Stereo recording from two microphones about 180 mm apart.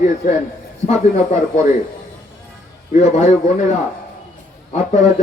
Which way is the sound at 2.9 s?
35° left (ahead or behind).